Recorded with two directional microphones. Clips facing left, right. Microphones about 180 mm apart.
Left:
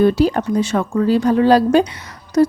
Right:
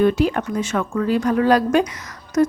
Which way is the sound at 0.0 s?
35° left (ahead or behind).